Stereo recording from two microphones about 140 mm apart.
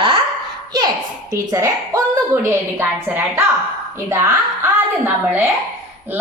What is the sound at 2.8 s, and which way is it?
A woman's voice, 15° right (ahead or behind).